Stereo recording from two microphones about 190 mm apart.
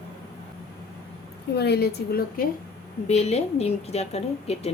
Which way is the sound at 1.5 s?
60° left (ahead or behind).